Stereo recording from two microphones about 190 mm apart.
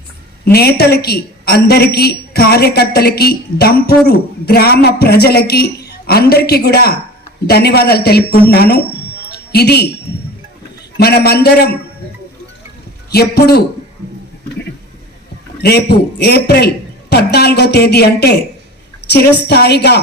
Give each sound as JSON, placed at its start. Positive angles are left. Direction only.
{"t": 0.4, "sound": "a woman's voice", "side_deg": 55}
{"t": 10.9, "sound": "a woman's voice", "side_deg": 55}
{"t": 13.1, "sound": "a man's voice", "side_deg": 55}
{"t": 15.6, "sound": "a woman's voice", "side_deg": 55}
{"t": 19.5, "sound": "a woman's voice", "side_deg": 60}